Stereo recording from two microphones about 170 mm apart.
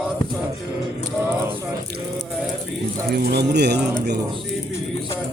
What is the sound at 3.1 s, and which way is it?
Speech, 75° right (ahead or behind).